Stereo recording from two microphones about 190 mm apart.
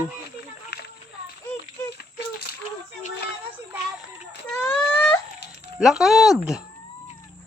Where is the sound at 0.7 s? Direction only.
65° left (ahead or behind).